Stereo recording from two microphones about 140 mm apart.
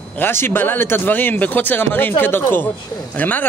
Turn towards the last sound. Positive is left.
turn(degrees=10)  # may be behind; listen again after turning